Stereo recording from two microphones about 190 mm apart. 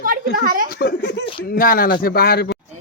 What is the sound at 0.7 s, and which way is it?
Speech, 60° left (ahead or behind).